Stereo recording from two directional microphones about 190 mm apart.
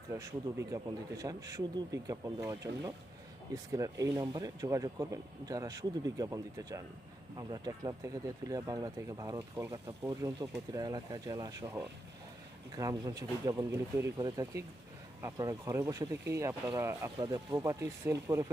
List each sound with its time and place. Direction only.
0.1 s speech: 15° right (ahead or behind)